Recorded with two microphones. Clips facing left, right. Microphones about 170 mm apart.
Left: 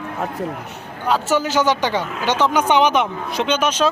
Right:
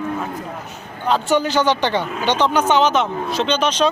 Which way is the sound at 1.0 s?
5° left (ahead or behind).